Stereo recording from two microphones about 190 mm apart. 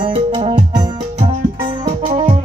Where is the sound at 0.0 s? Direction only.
25° right (ahead or behind).